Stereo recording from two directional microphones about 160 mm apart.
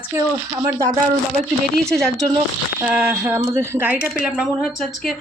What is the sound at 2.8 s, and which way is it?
Speech, 10° right (ahead or behind).